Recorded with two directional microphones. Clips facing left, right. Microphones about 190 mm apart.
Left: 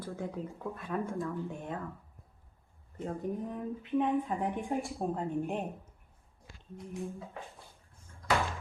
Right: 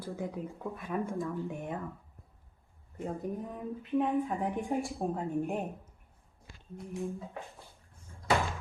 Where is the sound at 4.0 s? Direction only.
Centre (ahead or behind).